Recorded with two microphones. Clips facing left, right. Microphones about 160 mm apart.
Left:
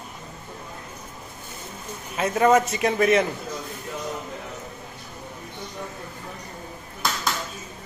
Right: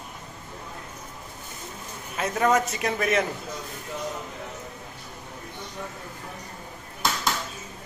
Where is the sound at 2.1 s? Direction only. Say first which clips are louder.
Left 4 dB; 5° left (ahead or behind).